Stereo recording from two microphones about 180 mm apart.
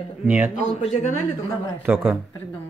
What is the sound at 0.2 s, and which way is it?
Speech, 10° right (ahead or behind).